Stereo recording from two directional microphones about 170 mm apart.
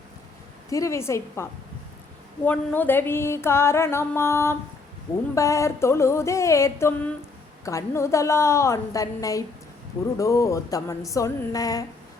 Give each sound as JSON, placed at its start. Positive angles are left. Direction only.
{"t": 0.7, "sound": "mantra", "side_deg": 20}
{"t": 10.2, "sound": "speech", "side_deg": 20}